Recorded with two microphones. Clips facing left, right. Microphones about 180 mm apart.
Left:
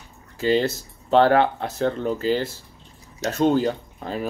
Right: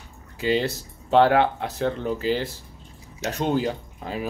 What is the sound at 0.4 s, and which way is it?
Speech, 15° right (ahead or behind).